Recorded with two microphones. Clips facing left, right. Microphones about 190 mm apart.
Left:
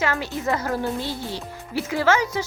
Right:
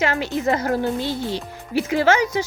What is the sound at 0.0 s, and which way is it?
Speech, 20° right (ahead or behind).